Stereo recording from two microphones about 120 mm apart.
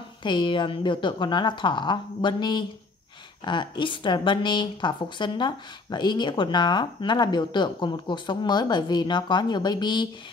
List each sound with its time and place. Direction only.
0.2 s a woman's voice: 40° left (ahead or behind)